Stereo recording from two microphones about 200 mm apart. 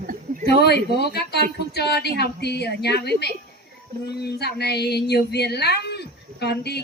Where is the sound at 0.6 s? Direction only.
55° left (ahead or behind).